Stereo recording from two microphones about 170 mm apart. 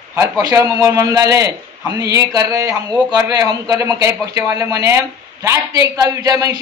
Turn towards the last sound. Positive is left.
turn(degrees=-20)  # may be behind; listen again after turning